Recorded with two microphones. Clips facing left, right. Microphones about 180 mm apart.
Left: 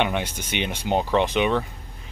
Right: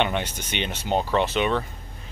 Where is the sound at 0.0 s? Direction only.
10° left (ahead or behind).